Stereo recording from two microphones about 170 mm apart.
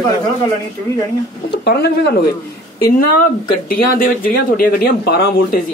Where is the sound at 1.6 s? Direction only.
75° left (ahead or behind).